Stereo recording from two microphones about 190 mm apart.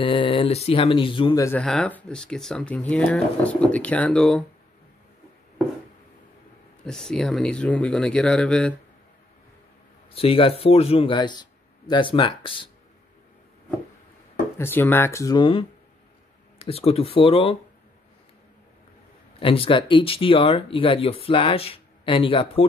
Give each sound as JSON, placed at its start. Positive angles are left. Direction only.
{"t": 0.0, "sound": "speech", "side_deg": 25}
{"t": 1.4, "sound": "speech", "side_deg": 5}
{"t": 6.8, "sound": "speech", "side_deg": 5}
{"t": 10.1, "sound": "speech", "side_deg": 30}
{"t": 14.6, "sound": "speech", "side_deg": 10}
{"t": 19.4, "sound": "speech", "side_deg": 30}